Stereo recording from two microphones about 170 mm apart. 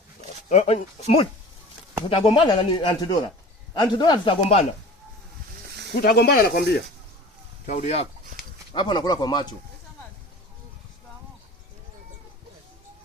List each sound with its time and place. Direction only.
0.4 s speech: 40° left (ahead or behind)
5.9 s speech: 60° left (ahead or behind)
7.7 s speech: 40° left (ahead or behind)
8.7 s speech: 25° left (ahead or behind)